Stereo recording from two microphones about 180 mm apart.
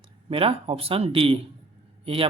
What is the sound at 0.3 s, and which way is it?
Speech, 30° right (ahead or behind).